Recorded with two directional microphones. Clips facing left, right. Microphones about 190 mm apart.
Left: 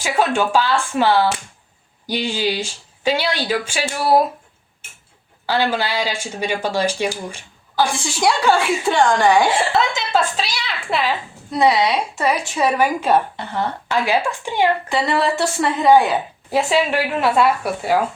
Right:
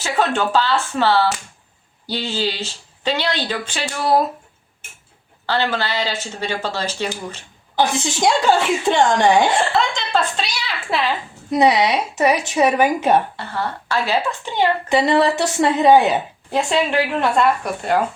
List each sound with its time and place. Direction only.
0.0 s speech: 10° left (ahead or behind)
5.5 s speech: 10° left (ahead or behind)
7.8 s a woman's voice: 20° right (ahead or behind)
9.5 s speech: 5° left (ahead or behind)
11.5 s a woman's voice: 20° right (ahead or behind)
13.3 s speech: 20° left (ahead or behind)
14.8 s a woman's voice: 20° right (ahead or behind)
16.5 s speech: 5° left (ahead or behind)